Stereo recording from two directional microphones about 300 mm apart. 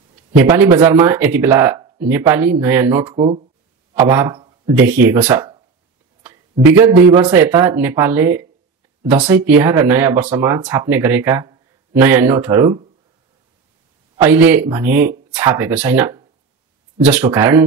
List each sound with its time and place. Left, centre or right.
0.4 s speech: centre
3.2 s speech: right
3.9 s a sound: centre
4.7 s speech: centre
6.7 s speech: centre
14.1 s speech: centre